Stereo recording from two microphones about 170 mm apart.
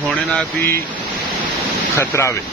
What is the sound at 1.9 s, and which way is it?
Speech, 15° left (ahead or behind).